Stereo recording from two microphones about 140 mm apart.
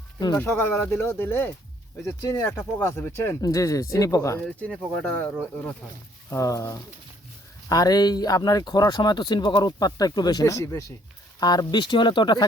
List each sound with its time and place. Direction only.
0.3 s speech: 15° left (ahead or behind)
4.4 s speech: 10° left (ahead or behind)
6.3 s speech: 25° left (ahead or behind)